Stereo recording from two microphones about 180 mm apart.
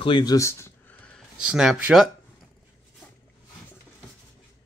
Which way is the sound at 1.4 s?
5° right (ahead or behind).